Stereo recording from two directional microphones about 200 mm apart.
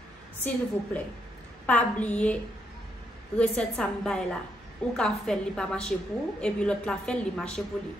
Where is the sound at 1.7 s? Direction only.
5° left (ahead or behind).